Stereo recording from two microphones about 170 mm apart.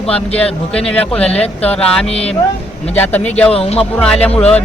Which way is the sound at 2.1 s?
35° left (ahead or behind).